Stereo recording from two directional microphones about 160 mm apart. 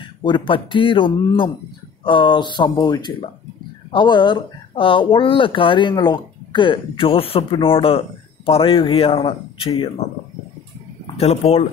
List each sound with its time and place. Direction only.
0.0 s speech: 30° left (ahead or behind)
11.1 s speech: 40° left (ahead or behind)